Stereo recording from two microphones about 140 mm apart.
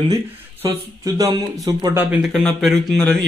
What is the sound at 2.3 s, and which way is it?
Speech, 5° left (ahead or behind).